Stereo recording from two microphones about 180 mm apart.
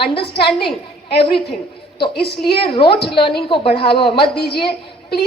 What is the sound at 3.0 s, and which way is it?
Speech, 25° left (ahead or behind).